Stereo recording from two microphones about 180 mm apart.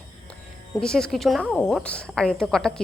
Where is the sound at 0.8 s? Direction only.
5° left (ahead or behind).